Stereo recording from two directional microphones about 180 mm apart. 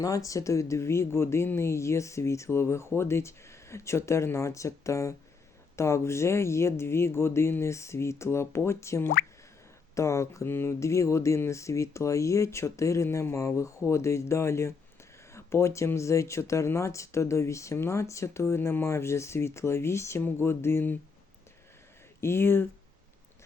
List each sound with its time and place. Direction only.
0.0 s speech: 20° left (ahead or behind)
22.2 s speech: 15° left (ahead or behind)